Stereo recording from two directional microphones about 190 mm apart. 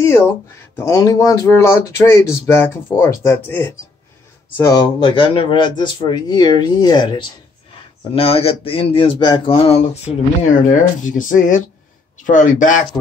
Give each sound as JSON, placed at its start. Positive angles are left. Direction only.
{"t": 0.7, "sound": "speech", "side_deg": 15}